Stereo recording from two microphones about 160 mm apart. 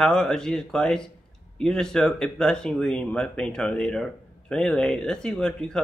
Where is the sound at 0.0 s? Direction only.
5° left (ahead or behind).